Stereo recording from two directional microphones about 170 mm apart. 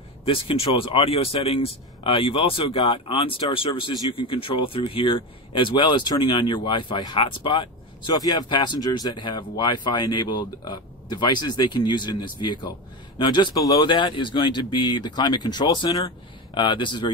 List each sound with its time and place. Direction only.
0.2 s speech: 30° left (ahead or behind)